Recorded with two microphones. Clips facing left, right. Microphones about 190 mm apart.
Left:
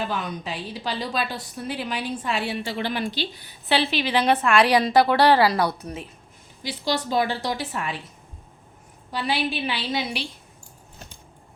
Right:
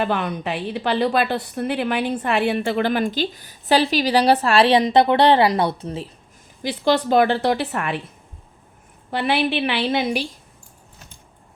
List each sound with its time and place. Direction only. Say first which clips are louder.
0.0 s a woman's voice: right 6 dB; 60° right (ahead or behind); by 6.1 s 30° right (ahead or behind)
6.6 s a woman's voice: right 7 dB; 55° right (ahead or behind)
9.0 s a woman's voice: right 5 dB; 60° right (ahead or behind)